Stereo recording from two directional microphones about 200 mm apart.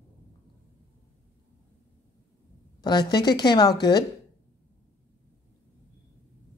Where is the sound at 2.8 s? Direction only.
20° left (ahead or behind).